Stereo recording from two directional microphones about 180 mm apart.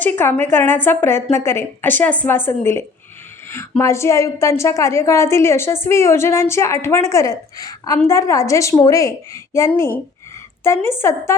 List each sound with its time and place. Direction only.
0.0 s a woman's voice: 10° left (ahead or behind)